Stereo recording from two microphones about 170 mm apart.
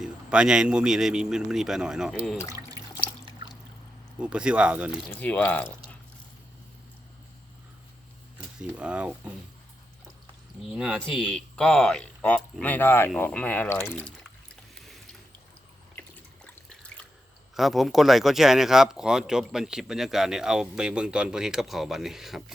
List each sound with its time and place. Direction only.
0.0 s speech: 5° right (ahead or behind)
2.4 s drip: 20° left (ahead or behind)
4.2 s speech: 5° right (ahead or behind)
5.0 s speech: 10° left (ahead or behind)
8.6 s speech: 5° right (ahead or behind)
10.7 s speech: 5° right (ahead or behind); by 14.1 s 10° left (ahead or behind)
16.0 s water: 5° left (ahead or behind)
17.5 s speech: centre (ahead or behind)